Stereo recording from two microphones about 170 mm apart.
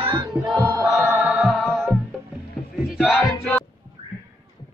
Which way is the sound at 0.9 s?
Centre (ahead or behind).